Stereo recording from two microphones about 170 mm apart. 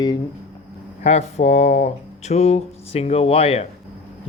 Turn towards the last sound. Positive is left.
turn(degrees=35)  # may be behind; listen again after turning